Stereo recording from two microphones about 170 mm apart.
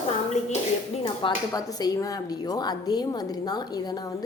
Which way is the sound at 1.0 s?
25° left (ahead or behind).